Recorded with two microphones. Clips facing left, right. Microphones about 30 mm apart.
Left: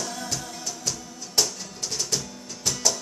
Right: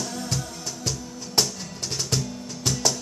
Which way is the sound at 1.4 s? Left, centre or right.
Right.